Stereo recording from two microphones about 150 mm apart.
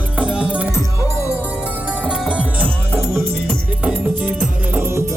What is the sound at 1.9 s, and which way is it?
Music, 5° right (ahead or behind).